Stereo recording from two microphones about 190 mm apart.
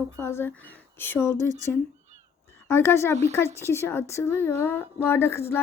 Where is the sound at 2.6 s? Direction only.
10° left (ahead or behind).